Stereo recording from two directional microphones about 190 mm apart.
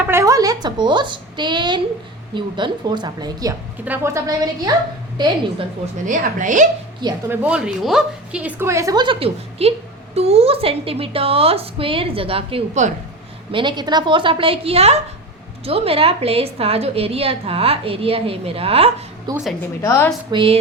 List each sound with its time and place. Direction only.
0.0 s a sound: 15° right (ahead or behind)
2.3 s a woman's voice: 25° right (ahead or behind)
6.1 s a woman's voice: 40° right (ahead or behind)
7.3 s a woman's voice: 5° right (ahead or behind); by 19.4 s 20° right (ahead or behind)
19.8 s a woman's voice: 15° left (ahead or behind)
20.3 s a woman's voice: 30° right (ahead or behind)